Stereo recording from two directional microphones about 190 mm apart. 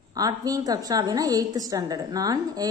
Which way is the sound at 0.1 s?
20° right (ahead or behind).